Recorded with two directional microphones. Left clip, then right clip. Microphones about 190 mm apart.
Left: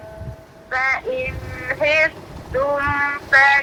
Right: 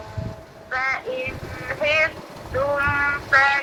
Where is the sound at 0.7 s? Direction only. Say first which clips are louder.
Left 4 dB; 35° left (ahead or behind).